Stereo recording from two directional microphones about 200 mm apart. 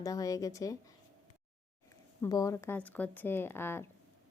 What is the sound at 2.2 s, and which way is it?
A woman's voice, 15° left (ahead or behind).